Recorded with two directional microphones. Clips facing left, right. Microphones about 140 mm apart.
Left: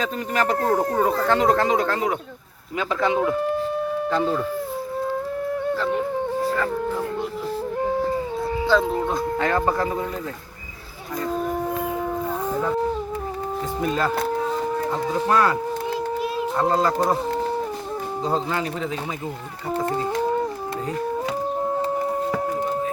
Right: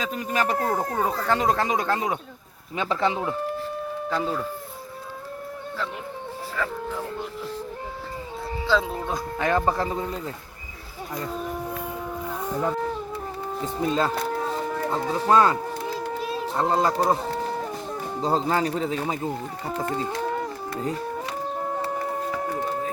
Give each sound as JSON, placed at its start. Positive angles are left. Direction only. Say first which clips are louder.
{"t": 0.3, "sound": "speech", "louder": "left 4 dB", "side_deg": -10}
{"t": 2.7, "sound": "speech", "louder": "left 2 dB", "side_deg": -30}
{"t": 9.0, "sound": "speech", "louder": "left 3 dB", "side_deg": -15}
{"t": 13.8, "sound": "speech", "louder": "even", "side_deg": -25}
{"t": 15.3, "sound": "speech", "louder": "right 2 dB", "side_deg": -25}
{"t": 16.7, "sound": "speech", "louder": "right 1 dB", "side_deg": -25}
{"t": 18.2, "sound": "speech", "louder": "right 2 dB", "side_deg": -35}